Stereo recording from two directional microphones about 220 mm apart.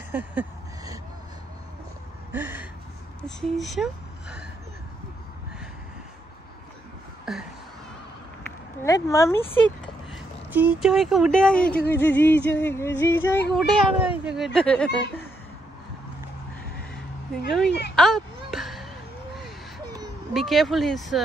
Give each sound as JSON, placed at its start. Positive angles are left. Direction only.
{"t": 0.1, "sound": "a sound", "side_deg": -10}
{"t": 2.3, "sound": "gasp", "side_deg": -10}
{"t": 3.3, "sound": "speech", "side_deg": 0}
{"t": 7.3, "sound": "a sound", "side_deg": 0}
{"t": 8.8, "sound": "speech", "side_deg": 15}
{"t": 10.1, "sound": "speech", "side_deg": -5}
{"t": 13.5, "sound": "speech", "side_deg": -5}
{"t": 17.6, "sound": "speech", "side_deg": 50}
{"t": 17.9, "sound": "a sound", "side_deg": 0}
{"t": 20.3, "sound": "speech", "side_deg": 0}